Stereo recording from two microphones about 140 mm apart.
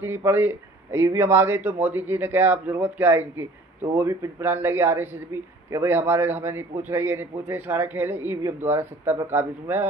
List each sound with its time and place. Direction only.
0.0 s speech: 15° right (ahead or behind)